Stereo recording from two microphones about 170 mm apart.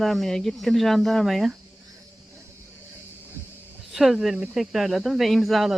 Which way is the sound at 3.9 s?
Centre (ahead or behind).